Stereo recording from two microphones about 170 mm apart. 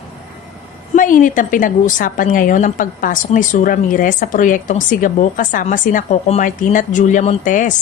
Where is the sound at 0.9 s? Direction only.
50° left (ahead or behind).